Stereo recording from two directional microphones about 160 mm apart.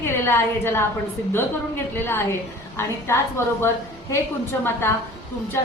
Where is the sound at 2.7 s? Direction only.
15° left (ahead or behind).